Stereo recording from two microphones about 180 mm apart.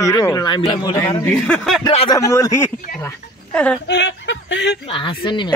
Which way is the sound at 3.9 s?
75° left (ahead or behind).